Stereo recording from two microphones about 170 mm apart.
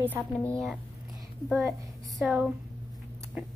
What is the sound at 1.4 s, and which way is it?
A woman's voice, centre (ahead or behind).